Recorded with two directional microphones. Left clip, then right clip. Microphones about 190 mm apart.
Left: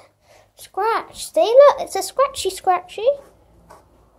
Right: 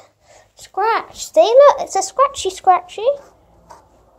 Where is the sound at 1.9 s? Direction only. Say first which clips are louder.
Right 4 dB; 5° left (ahead or behind).